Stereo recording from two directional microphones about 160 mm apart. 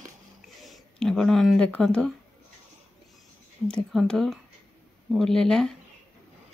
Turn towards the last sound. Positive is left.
turn(degrees=5)  # may be behind; listen again after turning